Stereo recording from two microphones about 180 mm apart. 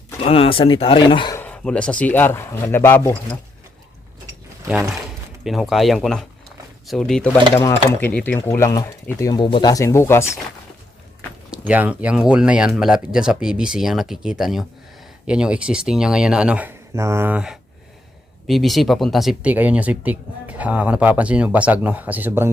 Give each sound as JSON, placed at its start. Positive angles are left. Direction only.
{"t": 0.2, "sound": "speech", "side_deg": 30}
{"t": 1.4, "sound": "speech", "side_deg": 5}
{"t": 5.4, "sound": "speech", "side_deg": 0}
{"t": 7.5, "sound": "speech", "side_deg": 20}
{"t": 11.5, "sound": "speech", "side_deg": -10}